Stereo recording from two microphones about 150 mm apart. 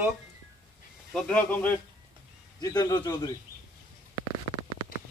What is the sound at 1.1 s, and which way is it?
Speech, 10° left (ahead or behind).